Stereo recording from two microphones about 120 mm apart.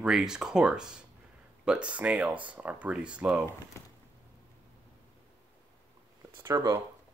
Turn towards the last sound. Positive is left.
turn(degrees=-30)  # may be behind; listen again after turning